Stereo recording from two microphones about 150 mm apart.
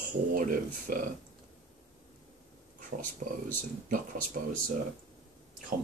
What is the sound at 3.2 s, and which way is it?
Speech, 65° right (ahead or behind).